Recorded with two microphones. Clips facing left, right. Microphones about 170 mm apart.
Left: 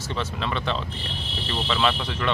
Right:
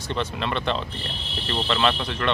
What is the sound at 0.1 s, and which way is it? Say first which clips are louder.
Speech: right 2 dB; centre (ahead or behind).